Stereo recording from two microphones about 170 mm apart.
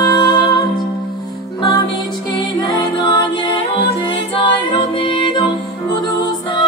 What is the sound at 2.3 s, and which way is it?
Music, 30° left (ahead or behind).